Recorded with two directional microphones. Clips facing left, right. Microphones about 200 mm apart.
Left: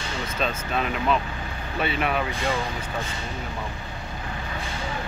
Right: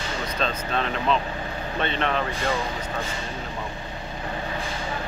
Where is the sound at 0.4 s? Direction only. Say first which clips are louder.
Even; 5° left (ahead or behind).